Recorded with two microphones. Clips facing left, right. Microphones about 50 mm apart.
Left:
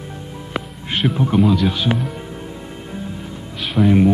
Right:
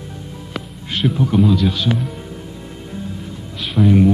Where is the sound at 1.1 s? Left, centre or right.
Left.